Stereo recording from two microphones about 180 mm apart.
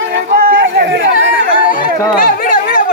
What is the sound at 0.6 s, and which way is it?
Speech, 70° right (ahead or behind).